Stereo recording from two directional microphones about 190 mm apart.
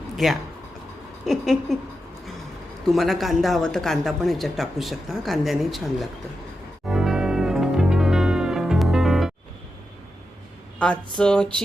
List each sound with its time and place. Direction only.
0.2 s speech: centre (ahead or behind)
2.8 s speech: centre (ahead or behind)
6.8 s music: 5° right (ahead or behind)
10.8 s speech: 5° left (ahead or behind)